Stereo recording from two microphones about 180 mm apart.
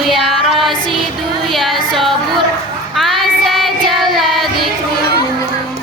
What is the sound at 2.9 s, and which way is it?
Child singing, centre (ahead or behind).